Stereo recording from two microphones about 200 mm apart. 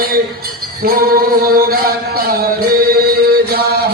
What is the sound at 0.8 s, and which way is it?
Music, 45° right (ahead or behind).